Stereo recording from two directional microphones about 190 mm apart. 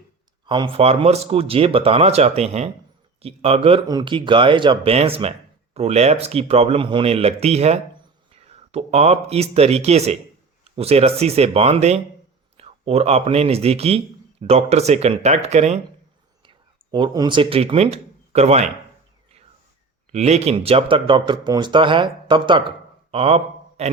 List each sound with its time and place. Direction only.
0.4 s a man's voice: 25° right (ahead or behind)
16.5 s speech: 25° right (ahead or behind)
20.1 s speech: 35° right (ahead or behind)